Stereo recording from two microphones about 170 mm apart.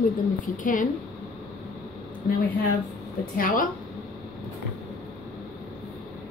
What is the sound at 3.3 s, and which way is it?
Speech, 55° left (ahead or behind).